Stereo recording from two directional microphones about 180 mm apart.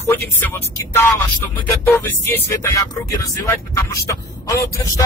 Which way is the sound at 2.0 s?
15° left (ahead or behind).